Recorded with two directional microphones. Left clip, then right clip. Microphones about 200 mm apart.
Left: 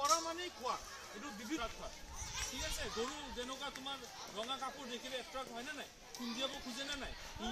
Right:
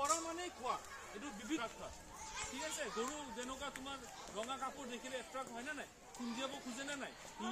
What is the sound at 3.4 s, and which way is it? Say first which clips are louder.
Speech: left 2 dB; 5° right (ahead or behind).